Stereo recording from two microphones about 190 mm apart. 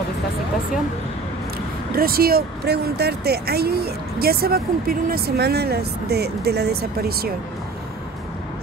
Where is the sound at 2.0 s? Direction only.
50° right (ahead or behind).